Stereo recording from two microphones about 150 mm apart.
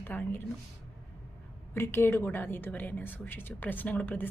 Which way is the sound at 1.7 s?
15° left (ahead or behind).